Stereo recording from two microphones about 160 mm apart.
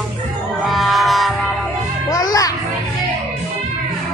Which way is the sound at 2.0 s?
20° left (ahead or behind).